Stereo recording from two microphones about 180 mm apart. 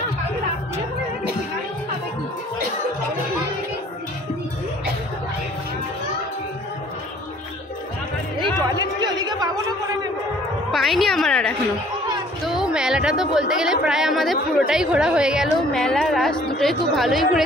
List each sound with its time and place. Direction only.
8.4 s chatter: 20° right (ahead or behind)
10.7 s a sound: centre (ahead or behind)
12.4 s a woman's voice: 5° right (ahead or behind)